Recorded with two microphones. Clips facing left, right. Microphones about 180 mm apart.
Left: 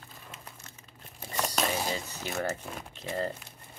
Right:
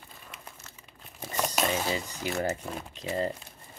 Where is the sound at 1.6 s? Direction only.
5° right (ahead or behind).